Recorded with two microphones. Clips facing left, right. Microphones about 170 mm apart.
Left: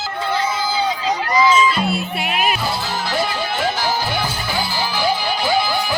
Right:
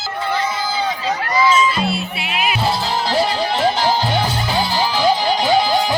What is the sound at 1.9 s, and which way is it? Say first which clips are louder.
Music: left 2 dB; 50° left (ahead or behind).